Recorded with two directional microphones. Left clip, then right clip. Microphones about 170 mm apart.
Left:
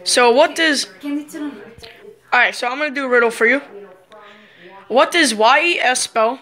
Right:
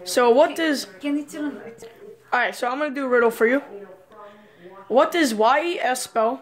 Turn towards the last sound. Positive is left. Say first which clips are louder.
# left 5 dB
turn(degrees=-10)  # may be behind; listen again after turning